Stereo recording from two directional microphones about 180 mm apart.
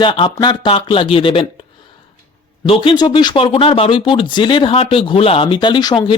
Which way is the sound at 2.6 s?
30° left (ahead or behind).